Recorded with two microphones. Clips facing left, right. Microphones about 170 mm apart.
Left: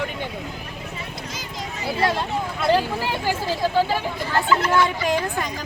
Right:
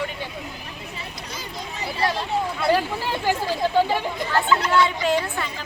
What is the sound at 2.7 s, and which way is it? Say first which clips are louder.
Speech: left 1 dB; 10° right (ahead or behind).